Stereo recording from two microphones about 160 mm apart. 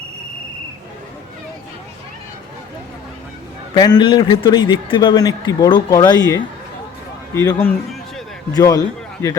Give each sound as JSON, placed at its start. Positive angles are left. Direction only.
{"t": 3.8, "sound": "a man's voice", "side_deg": 25}